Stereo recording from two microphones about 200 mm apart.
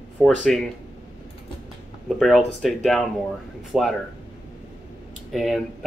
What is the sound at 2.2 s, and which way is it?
Speech, centre (ahead or behind).